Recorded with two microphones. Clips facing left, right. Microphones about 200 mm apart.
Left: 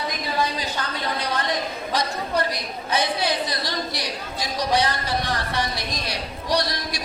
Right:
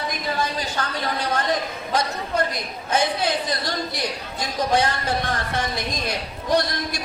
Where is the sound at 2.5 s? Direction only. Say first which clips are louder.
Right 2 dB; 50° right (ahead or behind).